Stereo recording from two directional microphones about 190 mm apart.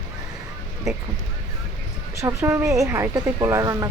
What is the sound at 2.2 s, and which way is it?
Speech, 15° right (ahead or behind).